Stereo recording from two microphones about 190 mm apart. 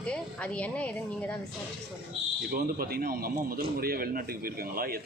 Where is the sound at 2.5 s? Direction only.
50° right (ahead or behind).